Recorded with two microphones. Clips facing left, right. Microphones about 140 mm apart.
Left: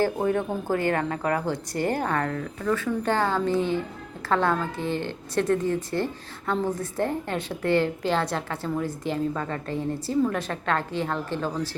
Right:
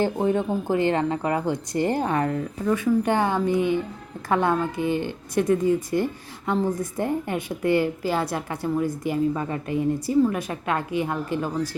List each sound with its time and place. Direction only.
0.0 s speech: 20° right (ahead or behind)